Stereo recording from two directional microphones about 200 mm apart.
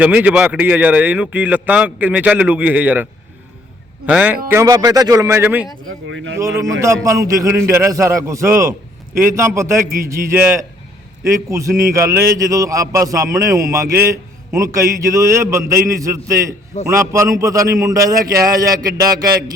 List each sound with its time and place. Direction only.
0.0 s a man's voice: 5° right (ahead or behind)
6.1 s speech: 65° right (ahead or behind)
6.8 s a man's voice: 15° right (ahead or behind)